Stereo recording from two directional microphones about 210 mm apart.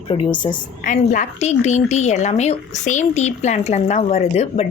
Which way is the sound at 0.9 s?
35° left (ahead or behind).